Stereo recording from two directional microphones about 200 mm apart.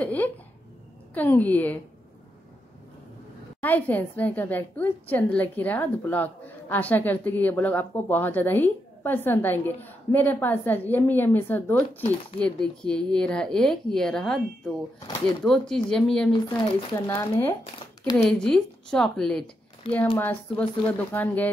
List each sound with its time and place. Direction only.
0.0 s a sound: 10° left (ahead or behind)
1.1 s a woman's voice: 10° left (ahead or behind)
3.6 s a woman's voice: 10° left (ahead or behind)
15.0 s a woman's voice: 20° left (ahead or behind)
15.4 s a woman's voice: 5° left (ahead or behind)